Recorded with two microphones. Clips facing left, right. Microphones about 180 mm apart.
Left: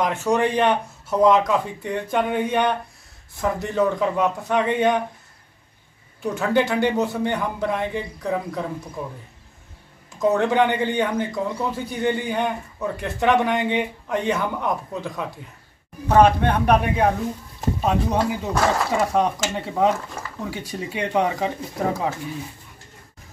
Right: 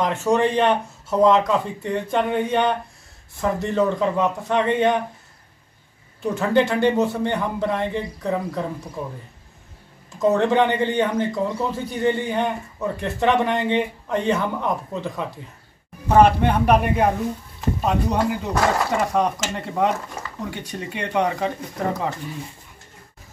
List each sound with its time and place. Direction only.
0.0 s a man's voice: centre (ahead or behind)
6.2 s a man's voice: centre (ahead or behind)
10.2 s a man's voice: 5° left (ahead or behind)